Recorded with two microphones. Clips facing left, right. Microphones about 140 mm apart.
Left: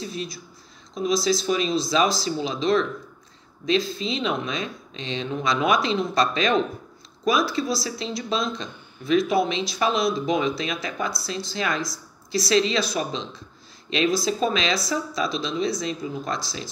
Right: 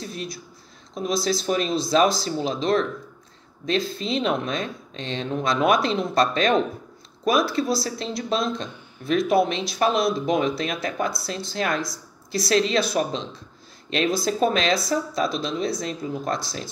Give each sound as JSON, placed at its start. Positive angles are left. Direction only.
{"t": 0.0, "sound": "speech", "side_deg": -55}